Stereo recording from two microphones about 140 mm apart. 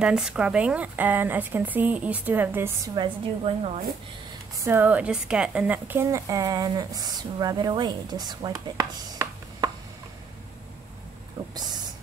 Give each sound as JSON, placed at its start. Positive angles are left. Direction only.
{"t": 0.0, "sound": "speech", "side_deg": -5}
{"t": 3.0, "sound": "a woman's voice", "side_deg": -40}
{"t": 4.6, "sound": "a woman's voice", "side_deg": -15}
{"t": 11.5, "sound": "a sound", "side_deg": -30}